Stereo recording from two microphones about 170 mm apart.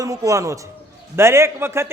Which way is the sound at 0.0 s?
20° right (ahead or behind).